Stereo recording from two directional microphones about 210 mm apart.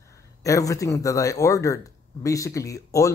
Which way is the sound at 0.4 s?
15° left (ahead or behind).